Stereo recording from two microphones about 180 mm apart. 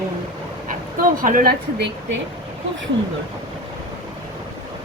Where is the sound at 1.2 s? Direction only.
50° right (ahead or behind).